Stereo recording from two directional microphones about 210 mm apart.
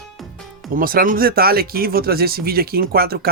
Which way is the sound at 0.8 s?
40° right (ahead or behind).